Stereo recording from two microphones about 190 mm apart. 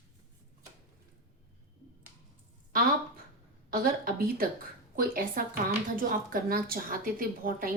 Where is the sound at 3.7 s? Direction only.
50° right (ahead or behind).